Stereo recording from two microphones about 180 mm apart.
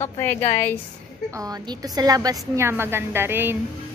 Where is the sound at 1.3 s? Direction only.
20° right (ahead or behind).